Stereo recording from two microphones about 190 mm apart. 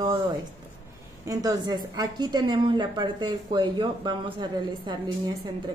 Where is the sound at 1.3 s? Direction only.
20° right (ahead or behind).